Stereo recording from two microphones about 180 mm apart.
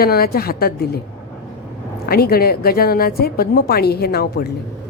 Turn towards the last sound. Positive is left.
turn(degrees=60)  # may be behind; listen again after turning